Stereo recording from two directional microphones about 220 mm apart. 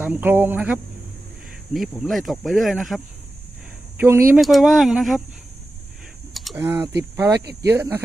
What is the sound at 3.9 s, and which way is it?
Speech, 10° right (ahead or behind).